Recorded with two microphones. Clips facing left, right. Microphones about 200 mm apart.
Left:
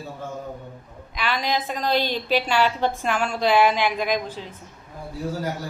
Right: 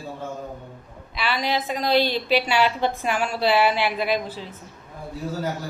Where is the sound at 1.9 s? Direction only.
45° left (ahead or behind).